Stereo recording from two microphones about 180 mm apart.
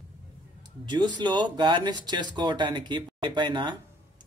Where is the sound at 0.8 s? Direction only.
25° right (ahead or behind).